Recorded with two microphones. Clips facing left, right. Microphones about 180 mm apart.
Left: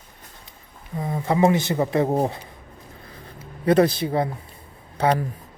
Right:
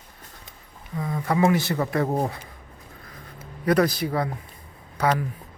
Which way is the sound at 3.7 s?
25° left (ahead or behind).